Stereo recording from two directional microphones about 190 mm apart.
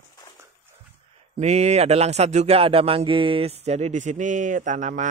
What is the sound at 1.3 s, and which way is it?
Speech, 35° right (ahead or behind).